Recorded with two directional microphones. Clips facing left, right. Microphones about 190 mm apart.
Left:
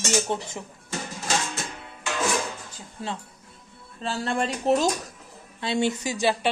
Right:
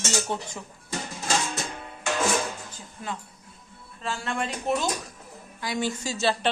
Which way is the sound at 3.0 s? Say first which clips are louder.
Left 2 dB; 30° left (ahead or behind).